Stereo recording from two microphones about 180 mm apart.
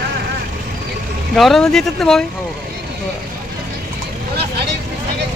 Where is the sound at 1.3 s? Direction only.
Centre (ahead or behind).